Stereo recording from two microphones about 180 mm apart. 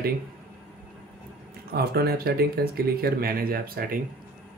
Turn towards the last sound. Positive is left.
turn(degrees=-55)  # may be behind; listen again after turning